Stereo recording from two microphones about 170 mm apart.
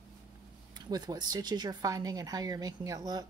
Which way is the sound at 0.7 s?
25° right (ahead or behind).